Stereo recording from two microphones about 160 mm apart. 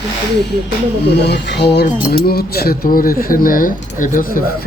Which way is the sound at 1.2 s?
90° left.